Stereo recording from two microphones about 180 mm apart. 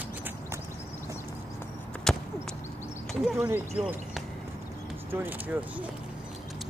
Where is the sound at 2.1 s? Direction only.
Centre (ahead or behind).